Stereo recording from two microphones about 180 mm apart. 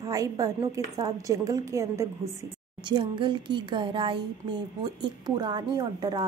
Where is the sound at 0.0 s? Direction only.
20° right (ahead or behind).